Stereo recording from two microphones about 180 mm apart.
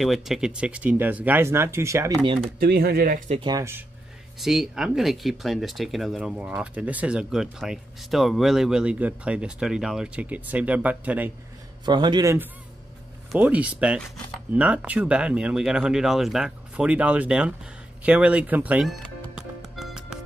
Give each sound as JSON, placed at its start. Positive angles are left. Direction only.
{"t": 0.0, "sound": "speech", "side_deg": 0}
{"t": 2.6, "sound": "speech", "side_deg": -60}
{"t": 3.3, "sound": "a man's voice", "side_deg": -20}
{"t": 4.4, "sound": "speech", "side_deg": 0}
{"t": 11.8, "sound": "a man's voice", "side_deg": -25}
{"t": 18.0, "sound": "music", "side_deg": -5}